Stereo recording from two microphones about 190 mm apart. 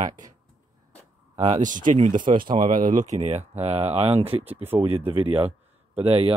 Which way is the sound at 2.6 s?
45° right (ahead or behind).